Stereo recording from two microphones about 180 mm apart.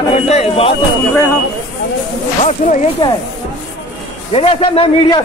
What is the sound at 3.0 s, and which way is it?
Speech, 25° left (ahead or behind).